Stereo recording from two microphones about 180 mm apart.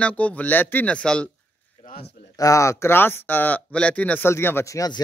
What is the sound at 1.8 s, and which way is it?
Speech, 60° left (ahead or behind).